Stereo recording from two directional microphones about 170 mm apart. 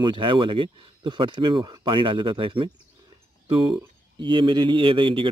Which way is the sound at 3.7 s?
30° right (ahead or behind).